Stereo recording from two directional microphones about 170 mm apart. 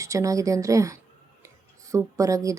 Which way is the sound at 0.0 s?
20° right (ahead or behind).